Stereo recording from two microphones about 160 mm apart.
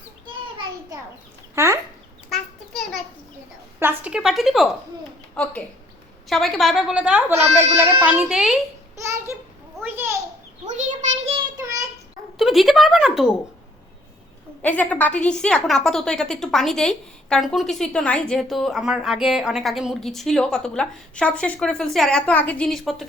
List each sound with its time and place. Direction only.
1.5 s speech: 15° right (ahead or behind)
2.3 s a sound: centre (ahead or behind)
3.8 s a woman's voice: 10° right (ahead or behind)
5.3 s a child's voice: 10° left (ahead or behind)
9.8 s a sound: 15° right (ahead or behind)
10.7 s child singing: 45° right (ahead or behind)
12.4 s a woman's voice: centre (ahead or behind)
14.6 s a woman's voice: 10° left (ahead or behind)